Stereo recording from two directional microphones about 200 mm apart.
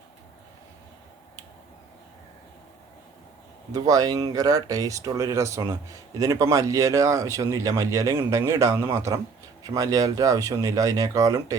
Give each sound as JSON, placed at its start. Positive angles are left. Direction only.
{"t": 3.7, "sound": "speech", "side_deg": -20}